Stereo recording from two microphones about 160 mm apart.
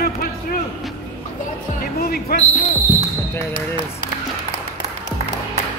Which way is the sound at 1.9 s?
70° left (ahead or behind).